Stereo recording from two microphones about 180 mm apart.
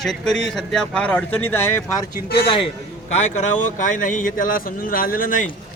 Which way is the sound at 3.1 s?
40° left (ahead or behind).